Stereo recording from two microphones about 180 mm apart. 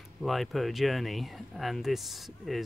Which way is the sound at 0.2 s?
Centre (ahead or behind).